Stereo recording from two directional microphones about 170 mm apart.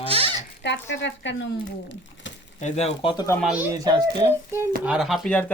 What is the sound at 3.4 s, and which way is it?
Speech, 5° right (ahead or behind).